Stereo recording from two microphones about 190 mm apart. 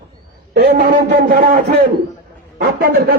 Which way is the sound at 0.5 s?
55° right (ahead or behind).